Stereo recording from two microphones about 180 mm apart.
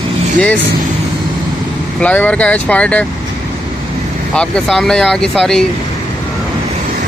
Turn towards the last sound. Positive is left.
turn(degrees=0)  # may be behind; listen again after turning